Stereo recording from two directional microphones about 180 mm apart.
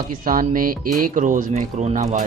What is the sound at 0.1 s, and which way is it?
Speech, 50° right (ahead or behind).